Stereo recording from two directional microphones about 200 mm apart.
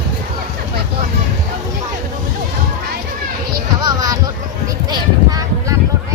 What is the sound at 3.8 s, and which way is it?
Speech, 20° right (ahead or behind).